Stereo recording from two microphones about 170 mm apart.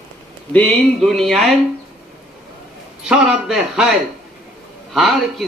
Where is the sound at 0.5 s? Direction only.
5° left (ahead or behind).